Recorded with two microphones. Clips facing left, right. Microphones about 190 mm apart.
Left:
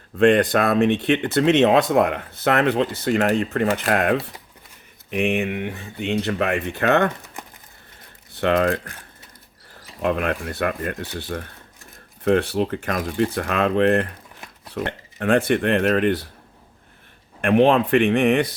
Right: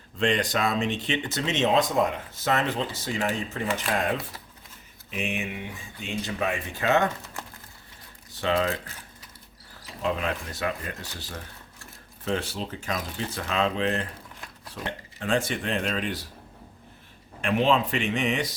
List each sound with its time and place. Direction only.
0.2 s speech: 55° left (ahead or behind)
7.4 s a sound: 15° left (ahead or behind)
8.3 s speech: 60° left (ahead or behind)
17.4 s speech: 55° left (ahead or behind)